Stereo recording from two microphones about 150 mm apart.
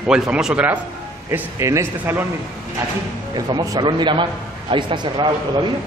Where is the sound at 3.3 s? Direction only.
25° right (ahead or behind).